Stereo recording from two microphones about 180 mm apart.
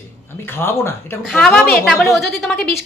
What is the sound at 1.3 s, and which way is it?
A woman's voice, centre (ahead or behind).